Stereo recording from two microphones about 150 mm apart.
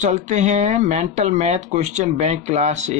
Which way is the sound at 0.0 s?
50° right (ahead or behind).